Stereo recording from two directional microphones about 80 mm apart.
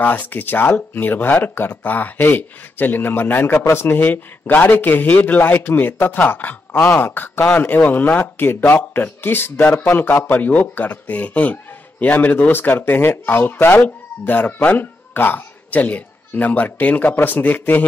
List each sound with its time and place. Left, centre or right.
0.0 s a man's voice: left